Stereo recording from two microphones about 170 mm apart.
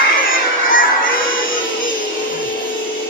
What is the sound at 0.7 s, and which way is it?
Music, 55° left (ahead or behind).